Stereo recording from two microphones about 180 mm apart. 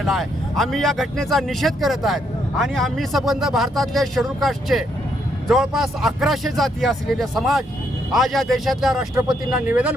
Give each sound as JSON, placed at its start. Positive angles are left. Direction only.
{"t": 0.0, "sound": "speech", "side_deg": 0}
{"t": 9.1, "sound": "speech", "side_deg": -25}
{"t": 9.5, "sound": "speech", "side_deg": -5}